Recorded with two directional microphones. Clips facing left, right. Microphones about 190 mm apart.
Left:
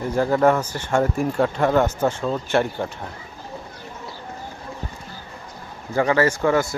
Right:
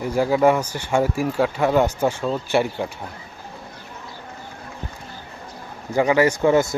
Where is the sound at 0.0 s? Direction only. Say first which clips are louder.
Right 1 dB; 10° right (ahead or behind).